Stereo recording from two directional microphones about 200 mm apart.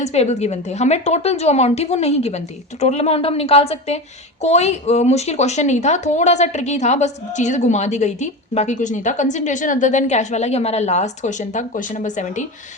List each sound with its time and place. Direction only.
0.0 s a woman's voice: 35° left (ahead or behind)